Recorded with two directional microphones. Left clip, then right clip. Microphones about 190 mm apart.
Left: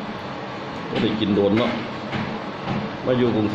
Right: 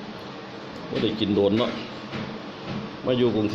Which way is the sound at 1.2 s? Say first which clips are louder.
Left 2 dB; 30° right (ahead or behind).